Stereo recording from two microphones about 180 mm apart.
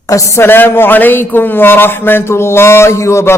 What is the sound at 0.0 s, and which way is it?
A man's voice, 15° left (ahead or behind).